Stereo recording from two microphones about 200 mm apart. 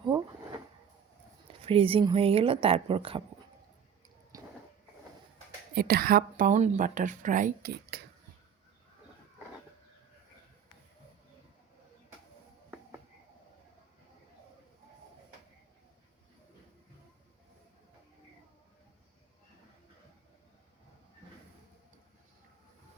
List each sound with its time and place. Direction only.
1.6 s speech: 25° right (ahead or behind)
4.3 s a sound: 15° right (ahead or behind)
5.7 s a woman's voice: 50° right (ahead or behind)